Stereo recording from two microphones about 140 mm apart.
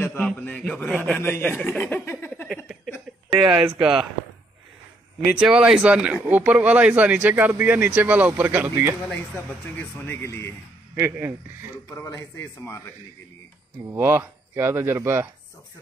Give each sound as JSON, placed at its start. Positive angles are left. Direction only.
{"t": 0.0, "sound": "a man's voice", "side_deg": 10}
{"t": 2.4, "sound": "a sound", "side_deg": 0}
{"t": 3.3, "sound": "speech", "side_deg": -5}
{"t": 5.4, "sound": "speech", "side_deg": -5}
{"t": 9.8, "sound": "a man's voice", "side_deg": 15}
{"t": 11.0, "sound": "speech", "side_deg": -15}
{"t": 11.9, "sound": "a man's voice", "side_deg": 20}
{"t": 13.8, "sound": "speech", "side_deg": -15}